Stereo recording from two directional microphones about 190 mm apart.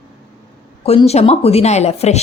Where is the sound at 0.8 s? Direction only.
30° left (ahead or behind).